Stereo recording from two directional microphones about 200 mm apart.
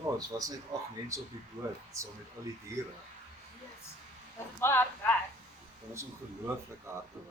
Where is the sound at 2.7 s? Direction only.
15° right (ahead or behind).